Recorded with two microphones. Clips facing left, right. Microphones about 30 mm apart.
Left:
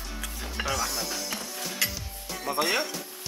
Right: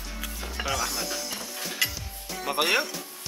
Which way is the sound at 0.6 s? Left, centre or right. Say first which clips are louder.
Right 1 dB; centre.